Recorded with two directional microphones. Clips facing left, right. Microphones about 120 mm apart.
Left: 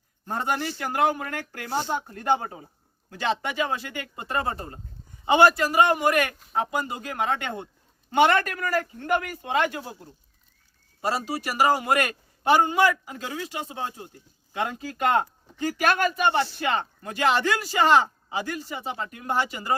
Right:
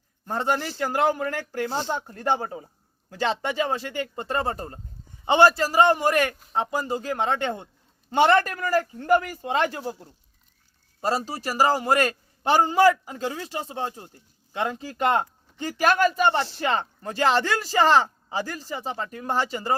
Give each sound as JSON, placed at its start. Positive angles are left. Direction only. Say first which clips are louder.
{"t": 0.4, "sound": "speech", "louder": "right 3 dB", "side_deg": -35}
{"t": 11.1, "sound": "speech", "louder": "right 1 dB", "side_deg": -35}